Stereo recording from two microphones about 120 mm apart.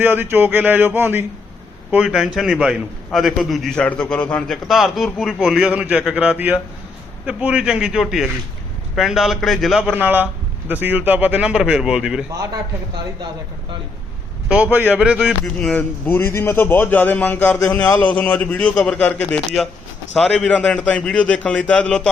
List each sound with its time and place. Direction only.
0.0 s speech: 20° right (ahead or behind)
1.9 s a man's voice: 5° right (ahead or behind)
9.8 s speech: 10° right (ahead or behind)
14.4 s speech: 10° right (ahead or behind)
15.3 s speech: 5° left (ahead or behind)